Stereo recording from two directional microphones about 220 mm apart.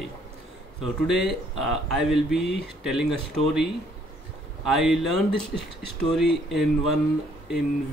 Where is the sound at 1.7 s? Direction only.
Centre (ahead or behind).